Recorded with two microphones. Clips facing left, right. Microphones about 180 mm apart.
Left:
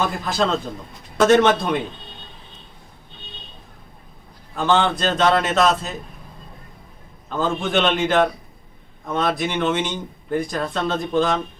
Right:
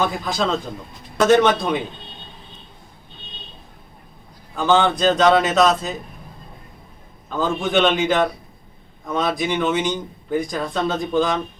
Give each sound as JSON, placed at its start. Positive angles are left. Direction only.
{"t": 0.0, "sound": "speech", "side_deg": 0}
{"t": 4.5, "sound": "speech", "side_deg": 0}
{"t": 7.3, "sound": "speech", "side_deg": 0}